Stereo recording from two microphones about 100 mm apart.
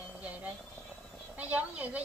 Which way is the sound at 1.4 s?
15° right (ahead or behind).